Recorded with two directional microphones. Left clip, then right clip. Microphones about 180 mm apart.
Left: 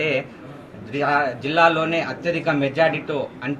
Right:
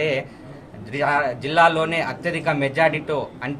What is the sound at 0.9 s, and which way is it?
A man's voice, 10° right (ahead or behind).